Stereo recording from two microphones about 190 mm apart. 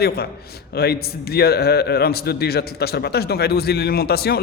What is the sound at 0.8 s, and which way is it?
A man's voice, 55° left (ahead or behind).